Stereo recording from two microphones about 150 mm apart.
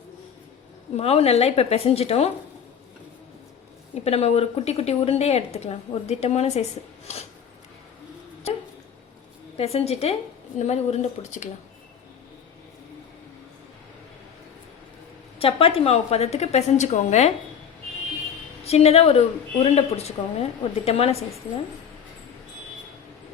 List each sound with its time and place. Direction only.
0.9 s speech: 45° left (ahead or behind)
4.0 s speech: 45° left (ahead or behind)
9.6 s speech: 45° left (ahead or behind)
15.4 s speech: 40° left (ahead or behind)
18.6 s speech: 45° left (ahead or behind)